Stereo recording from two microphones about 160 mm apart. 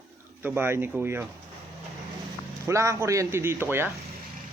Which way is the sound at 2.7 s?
20° right (ahead or behind).